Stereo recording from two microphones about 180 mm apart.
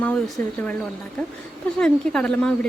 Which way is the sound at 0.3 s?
10° left (ahead or behind).